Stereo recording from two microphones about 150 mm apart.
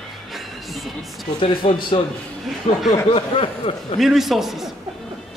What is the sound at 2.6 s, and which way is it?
Speech, 45° left (ahead or behind).